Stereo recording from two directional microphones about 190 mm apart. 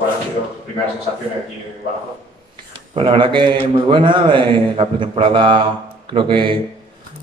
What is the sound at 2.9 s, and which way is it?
A man's voice, 25° right (ahead or behind).